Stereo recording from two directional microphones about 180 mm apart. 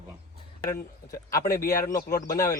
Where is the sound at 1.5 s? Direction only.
15° left (ahead or behind).